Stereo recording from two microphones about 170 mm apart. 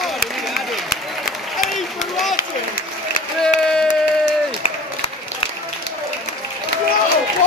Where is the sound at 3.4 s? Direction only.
5° left (ahead or behind).